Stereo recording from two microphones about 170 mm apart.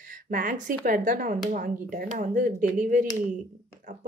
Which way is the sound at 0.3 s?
50° right (ahead or behind).